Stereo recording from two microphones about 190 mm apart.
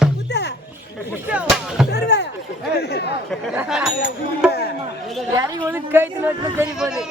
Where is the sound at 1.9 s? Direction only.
60° left (ahead or behind).